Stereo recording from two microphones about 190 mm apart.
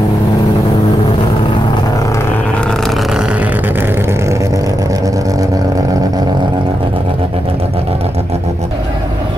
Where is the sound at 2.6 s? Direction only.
5° left (ahead or behind); by 5.4 s 15° right (ahead or behind).